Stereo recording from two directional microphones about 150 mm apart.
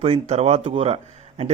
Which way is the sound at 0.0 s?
45° right (ahead or behind).